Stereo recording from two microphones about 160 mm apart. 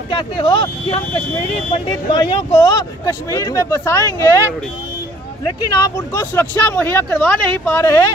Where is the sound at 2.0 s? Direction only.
30° left (ahead or behind).